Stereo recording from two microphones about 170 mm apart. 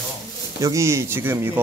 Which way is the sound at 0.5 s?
20° right (ahead or behind).